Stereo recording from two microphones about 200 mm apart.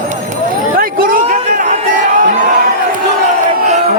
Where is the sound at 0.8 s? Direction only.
45° right (ahead or behind).